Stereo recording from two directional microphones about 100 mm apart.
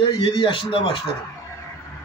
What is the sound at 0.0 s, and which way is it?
A man's voice, 65° left (ahead or behind).